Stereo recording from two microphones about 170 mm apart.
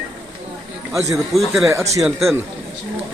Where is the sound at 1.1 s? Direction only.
Centre (ahead or behind).